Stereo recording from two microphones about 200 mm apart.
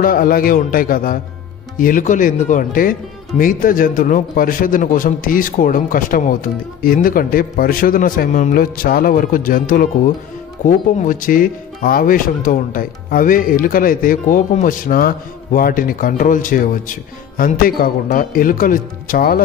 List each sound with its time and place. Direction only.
0.0 s speech: 45° left (ahead or behind)